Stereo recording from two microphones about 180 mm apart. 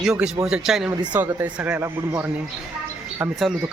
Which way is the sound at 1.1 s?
10° right (ahead or behind).